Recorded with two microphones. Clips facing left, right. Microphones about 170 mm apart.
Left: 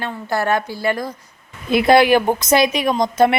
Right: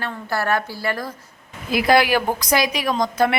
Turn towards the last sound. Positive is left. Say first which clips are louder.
# left 4 dB
turn(degrees=20)  # may be behind; listen again after turning